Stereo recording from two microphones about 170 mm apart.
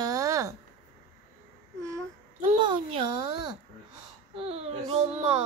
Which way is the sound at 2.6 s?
30° right (ahead or behind).